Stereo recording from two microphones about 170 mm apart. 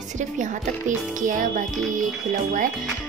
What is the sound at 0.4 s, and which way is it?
Speech, 45° right (ahead or behind).